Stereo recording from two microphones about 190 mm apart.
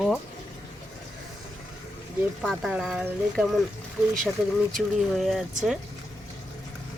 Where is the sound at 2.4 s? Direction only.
Centre (ahead or behind).